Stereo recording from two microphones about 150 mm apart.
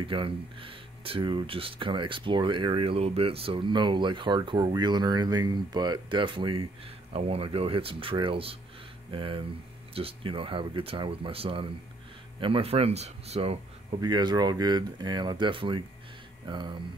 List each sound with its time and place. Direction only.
0.0 s speech: 35° right (ahead or behind)
13.9 s speech: 30° right (ahead or behind)